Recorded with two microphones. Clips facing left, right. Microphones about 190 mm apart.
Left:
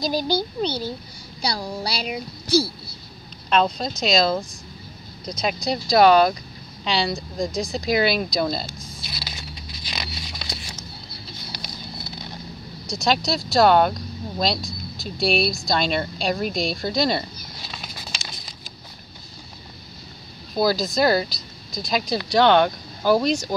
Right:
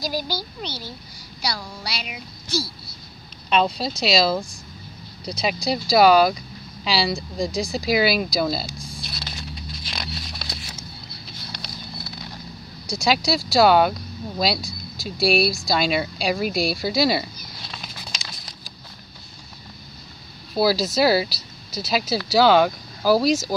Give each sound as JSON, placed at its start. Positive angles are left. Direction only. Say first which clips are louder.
{"t": 0.0, "sound": "speech", "louder": "left 5 dB", "side_deg": 20}
{"t": 3.4, "sound": "speech", "louder": "even", "side_deg": 0}
{"t": 9.8, "sound": "a sound", "louder": "left 1 dB", "side_deg": 0}
{"t": 12.9, "sound": "speech", "louder": "right 1 dB", "side_deg": -5}
{"t": 20.5, "sound": "speech", "louder": "right 1 dB", "side_deg": -5}